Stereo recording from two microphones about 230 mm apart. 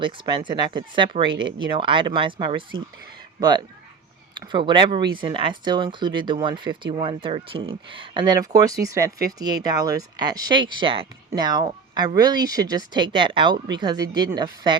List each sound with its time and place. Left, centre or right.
0.0 s speech: right
4.4 s speech: right